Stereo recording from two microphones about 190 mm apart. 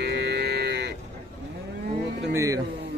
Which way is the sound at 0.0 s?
60° right (ahead or behind).